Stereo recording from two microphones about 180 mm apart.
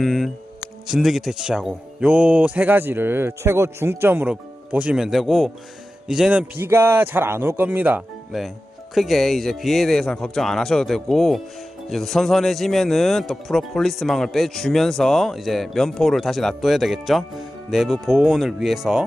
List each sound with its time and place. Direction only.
0.0 s music: centre (ahead or behind)
0.9 s speech: centre (ahead or behind)